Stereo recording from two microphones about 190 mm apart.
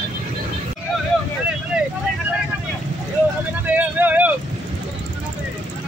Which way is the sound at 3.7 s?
10° right (ahead or behind).